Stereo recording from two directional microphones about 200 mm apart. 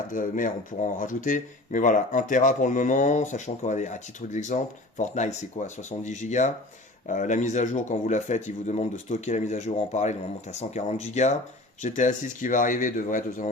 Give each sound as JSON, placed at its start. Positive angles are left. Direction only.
{"t": 0.1, "sound": "speech", "side_deg": 40}